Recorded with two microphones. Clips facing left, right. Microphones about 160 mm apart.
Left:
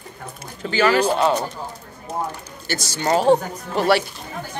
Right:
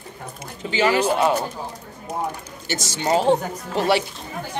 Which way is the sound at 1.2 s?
10° right (ahead or behind).